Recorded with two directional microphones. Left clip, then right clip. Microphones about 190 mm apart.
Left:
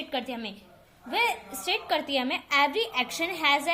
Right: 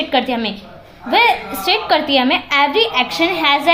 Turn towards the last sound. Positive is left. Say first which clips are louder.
# right 11 dB
turn(degrees=30)  # may be behind; listen again after turning